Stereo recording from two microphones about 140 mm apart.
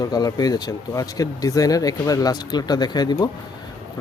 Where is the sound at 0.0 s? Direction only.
25° left (ahead or behind).